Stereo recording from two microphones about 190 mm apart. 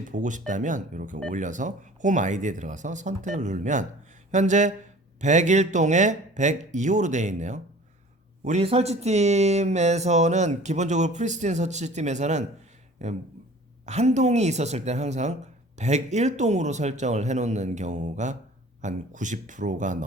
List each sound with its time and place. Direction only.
0.1 s speech: 40° right (ahead or behind)